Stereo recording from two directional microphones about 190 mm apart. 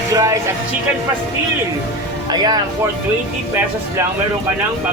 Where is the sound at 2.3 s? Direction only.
20° right (ahead or behind).